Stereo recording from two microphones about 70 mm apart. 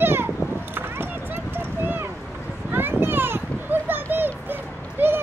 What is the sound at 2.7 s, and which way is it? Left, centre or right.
Children playing, right.